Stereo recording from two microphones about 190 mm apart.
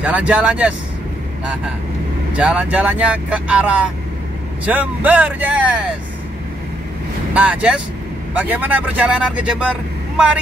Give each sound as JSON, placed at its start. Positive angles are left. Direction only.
{"t": 0.0, "sound": "speech", "side_deg": -5}
{"t": 2.3, "sound": "speech", "side_deg": -5}
{"t": 7.3, "sound": "speech", "side_deg": -5}